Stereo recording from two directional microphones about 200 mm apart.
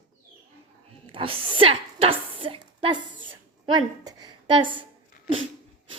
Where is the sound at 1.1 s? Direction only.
25° right (ahead or behind).